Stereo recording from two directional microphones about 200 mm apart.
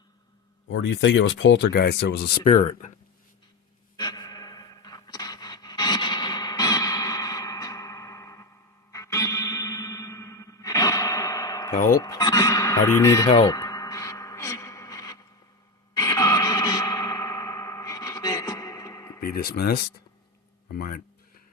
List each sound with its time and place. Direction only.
0.7 s speech: 65° left (ahead or behind)
2.5 s speech: 35° left (ahead or behind)
3.9 s a sound: 20° left (ahead or behind)
8.9 s music: 15° left (ahead or behind)
11.9 s speech: 15° left (ahead or behind)
13.3 s a sound: 20° left (ahead or behind)
16.0 s music: 15° left (ahead or behind)
19.2 s speech: 50° left (ahead or behind)